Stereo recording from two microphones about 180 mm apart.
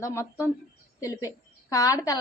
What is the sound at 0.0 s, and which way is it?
A woman's voice, 15° left (ahead or behind).